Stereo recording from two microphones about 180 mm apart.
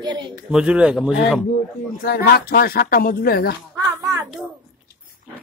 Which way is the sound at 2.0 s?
60° left (ahead or behind).